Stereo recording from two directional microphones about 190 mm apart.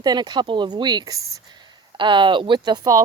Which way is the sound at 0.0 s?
20° right (ahead or behind).